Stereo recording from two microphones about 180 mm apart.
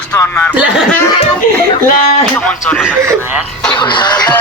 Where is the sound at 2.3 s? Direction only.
5° left (ahead or behind).